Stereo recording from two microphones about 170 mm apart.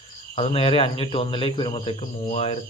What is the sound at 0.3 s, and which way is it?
Speech, 35° left (ahead or behind).